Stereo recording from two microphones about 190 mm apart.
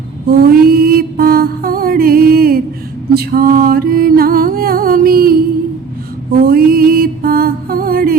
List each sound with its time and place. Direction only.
0.3 s mantra: 50° right (ahead or behind)
3.2 s music: 50° right (ahead or behind)
6.4 s mantra: 55° right (ahead or behind)